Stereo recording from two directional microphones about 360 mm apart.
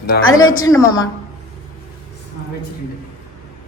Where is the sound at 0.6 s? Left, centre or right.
Centre.